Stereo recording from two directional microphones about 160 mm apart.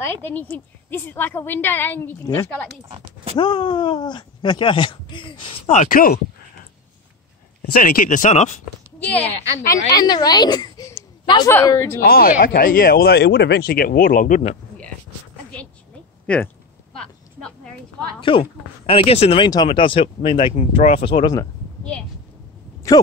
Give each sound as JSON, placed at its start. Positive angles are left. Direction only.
{"t": 0.0, "sound": "a woman's voice", "side_deg": 15}
{"t": 3.3, "sound": "speech", "side_deg": 30}
{"t": 5.7, "sound": "speech", "side_deg": 55}
{"t": 7.7, "sound": "speech", "side_deg": 60}
{"t": 9.0, "sound": "a woman's voice", "side_deg": 10}
{"t": 9.7, "sound": "a woman's voice", "side_deg": 25}
{"t": 12.0, "sound": "speech", "side_deg": 70}
{"t": 17.4, "sound": "a sound", "side_deg": 5}
{"t": 18.2, "sound": "speech", "side_deg": 35}
{"t": 19.4, "sound": "speech", "side_deg": 30}